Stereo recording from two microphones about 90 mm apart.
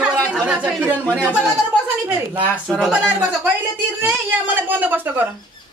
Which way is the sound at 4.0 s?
15° right (ahead or behind).